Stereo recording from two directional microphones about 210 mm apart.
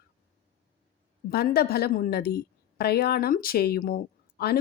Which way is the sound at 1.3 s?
50° left (ahead or behind).